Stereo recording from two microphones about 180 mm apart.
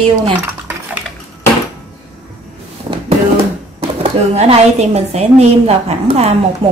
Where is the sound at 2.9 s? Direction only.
25° right (ahead or behind).